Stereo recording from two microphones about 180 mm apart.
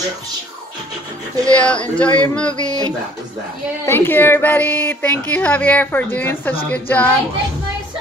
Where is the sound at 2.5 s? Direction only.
20° right (ahead or behind).